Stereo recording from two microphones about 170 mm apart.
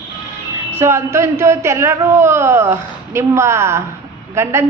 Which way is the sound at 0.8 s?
15° right (ahead or behind).